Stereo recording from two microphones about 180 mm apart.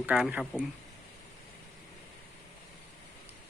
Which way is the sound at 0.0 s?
5° right (ahead or behind).